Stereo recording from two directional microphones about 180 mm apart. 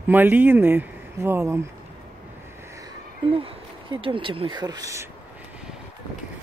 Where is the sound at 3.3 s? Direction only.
30° right (ahead or behind).